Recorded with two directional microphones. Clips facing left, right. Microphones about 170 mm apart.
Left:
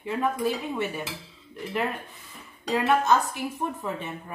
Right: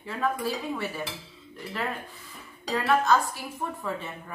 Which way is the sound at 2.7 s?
20° left (ahead or behind).